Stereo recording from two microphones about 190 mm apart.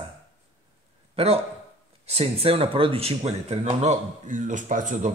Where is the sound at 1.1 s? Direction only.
30° right (ahead or behind).